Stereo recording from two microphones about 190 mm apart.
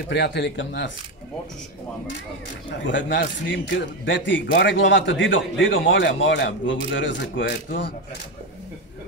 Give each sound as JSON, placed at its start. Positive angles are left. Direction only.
{"t": 0.1, "sound": "speech", "side_deg": 65}
{"t": 2.9, "sound": "a man's voice", "side_deg": 75}